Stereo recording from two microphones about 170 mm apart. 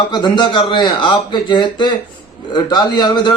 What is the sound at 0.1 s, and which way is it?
A man's voice, 25° left (ahead or behind).